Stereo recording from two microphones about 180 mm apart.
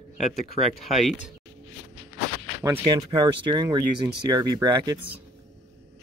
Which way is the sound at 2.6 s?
15° right (ahead or behind).